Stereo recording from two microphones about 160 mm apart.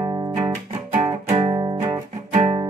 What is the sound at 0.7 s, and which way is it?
Music, 40° right (ahead or behind).